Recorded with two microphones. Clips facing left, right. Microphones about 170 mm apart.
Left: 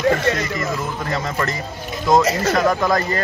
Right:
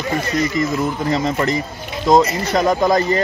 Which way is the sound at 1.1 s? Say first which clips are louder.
Right 4 dB; 20° right (ahead or behind).